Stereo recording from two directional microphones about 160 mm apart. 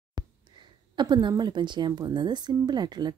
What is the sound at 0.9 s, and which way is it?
A woman's voice, 25° right (ahead or behind).